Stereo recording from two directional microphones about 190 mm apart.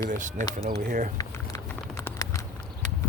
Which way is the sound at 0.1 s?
40° right (ahead or behind).